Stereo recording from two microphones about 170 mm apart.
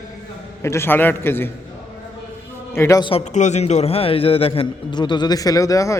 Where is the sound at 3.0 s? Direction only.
40° left (ahead or behind); by 5.9 s 20° left (ahead or behind).